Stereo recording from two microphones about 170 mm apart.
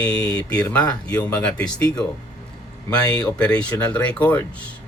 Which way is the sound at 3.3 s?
5° left (ahead or behind).